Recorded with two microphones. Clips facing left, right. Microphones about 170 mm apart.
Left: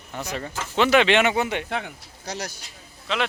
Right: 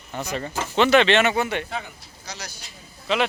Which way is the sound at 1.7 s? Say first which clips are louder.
Left 3 dB; 60° left (ahead or behind).